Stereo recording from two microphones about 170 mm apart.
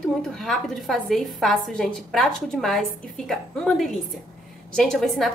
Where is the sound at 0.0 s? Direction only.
Centre (ahead or behind).